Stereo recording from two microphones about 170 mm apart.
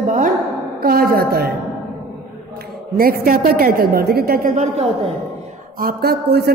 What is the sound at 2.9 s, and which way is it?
Speech, 60° right (ahead or behind).